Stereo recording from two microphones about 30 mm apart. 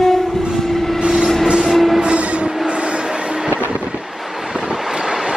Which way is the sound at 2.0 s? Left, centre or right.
Right.